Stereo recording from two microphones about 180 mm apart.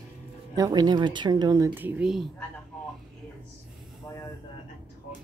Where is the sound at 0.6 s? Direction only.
20° right (ahead or behind); by 2.2 s 5° right (ahead or behind).